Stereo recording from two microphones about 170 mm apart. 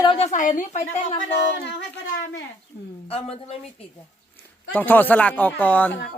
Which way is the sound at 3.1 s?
35° left (ahead or behind).